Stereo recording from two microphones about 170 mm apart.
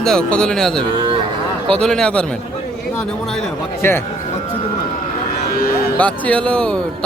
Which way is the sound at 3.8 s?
15° left (ahead or behind).